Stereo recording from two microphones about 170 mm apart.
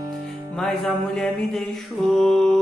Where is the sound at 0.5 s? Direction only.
Centre (ahead or behind).